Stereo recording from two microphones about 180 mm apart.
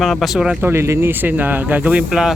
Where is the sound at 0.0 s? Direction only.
Centre (ahead or behind).